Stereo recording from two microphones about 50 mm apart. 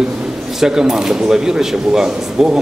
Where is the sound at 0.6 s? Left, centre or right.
Centre.